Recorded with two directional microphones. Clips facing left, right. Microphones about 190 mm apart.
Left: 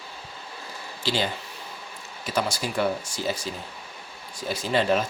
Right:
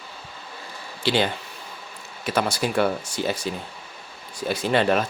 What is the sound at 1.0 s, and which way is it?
Speech, 60° right (ahead or behind).